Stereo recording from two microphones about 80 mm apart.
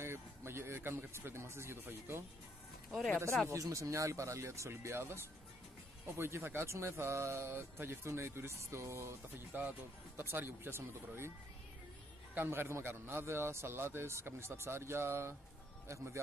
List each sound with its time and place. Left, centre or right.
0.0 s speech: right
2.9 s speech: centre
3.4 s speech: right
9.5 s speech: right
12.4 s speech: right